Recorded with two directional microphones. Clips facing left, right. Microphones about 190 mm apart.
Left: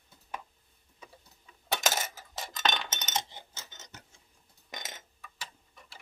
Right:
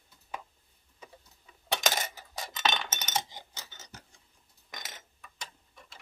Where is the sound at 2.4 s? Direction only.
5° right (ahead or behind).